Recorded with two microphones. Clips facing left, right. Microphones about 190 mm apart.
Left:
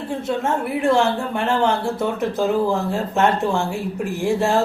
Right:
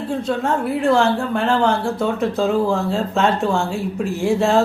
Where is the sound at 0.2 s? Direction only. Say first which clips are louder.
Even; 20° left (ahead or behind).